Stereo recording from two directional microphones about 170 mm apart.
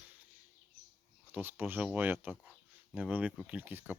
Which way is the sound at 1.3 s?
10° right (ahead or behind).